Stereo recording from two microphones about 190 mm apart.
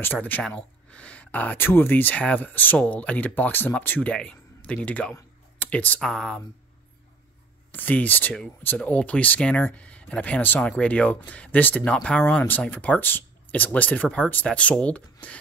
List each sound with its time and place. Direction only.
0.0 s speech: 10° left (ahead or behind)
7.7 s speech: 10° left (ahead or behind)